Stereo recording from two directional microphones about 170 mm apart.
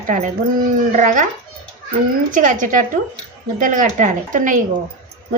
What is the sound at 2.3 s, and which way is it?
Speech, 50° right (ahead or behind).